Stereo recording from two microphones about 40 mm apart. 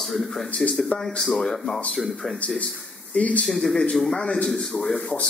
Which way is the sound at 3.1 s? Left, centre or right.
Left.